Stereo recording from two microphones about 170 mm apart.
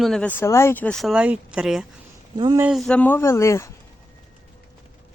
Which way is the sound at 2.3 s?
25° right (ahead or behind).